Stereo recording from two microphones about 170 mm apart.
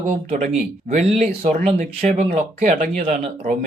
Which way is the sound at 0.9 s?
40° right (ahead or behind).